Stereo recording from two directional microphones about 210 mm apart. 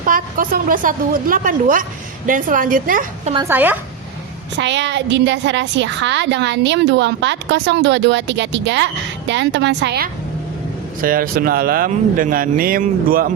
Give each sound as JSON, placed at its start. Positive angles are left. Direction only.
{"t": 0.0, "sound": "a woman's voice", "side_deg": -40}
{"t": 3.3, "sound": "speech", "side_deg": -10}
{"t": 4.5, "sound": "a woman's voice", "side_deg": -60}
{"t": 11.0, "sound": "speech", "side_deg": -40}